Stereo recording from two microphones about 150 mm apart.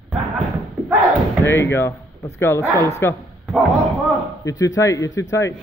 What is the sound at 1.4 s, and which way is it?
Speech, 15° left (ahead or behind).